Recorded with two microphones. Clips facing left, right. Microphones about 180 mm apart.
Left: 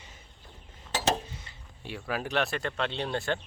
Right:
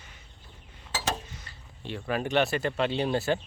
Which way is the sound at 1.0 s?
25° left (ahead or behind).